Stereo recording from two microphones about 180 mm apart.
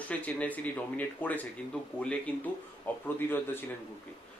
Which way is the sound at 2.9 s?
10° left (ahead or behind).